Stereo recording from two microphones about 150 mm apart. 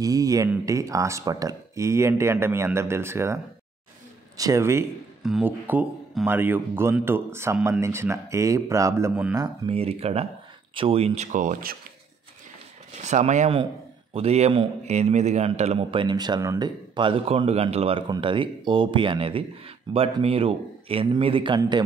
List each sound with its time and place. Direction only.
0.0 s speech: 20° right (ahead or behind)
4.4 s speech: 20° right (ahead or behind)
5.2 s speech: 5° right (ahead or behind)
9.7 s speech: 40° right (ahead or behind)
11.3 s speech: 60° right (ahead or behind)
13.0 s speech: 50° right (ahead or behind); by 21.8 s 30° right (ahead or behind)